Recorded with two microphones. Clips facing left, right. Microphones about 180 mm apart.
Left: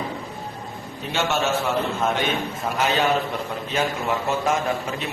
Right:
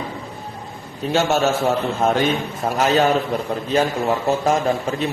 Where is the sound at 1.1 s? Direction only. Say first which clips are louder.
Right 5 dB; 40° right (ahead or behind).